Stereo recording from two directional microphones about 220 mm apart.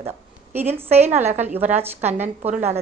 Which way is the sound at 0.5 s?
10° right (ahead or behind).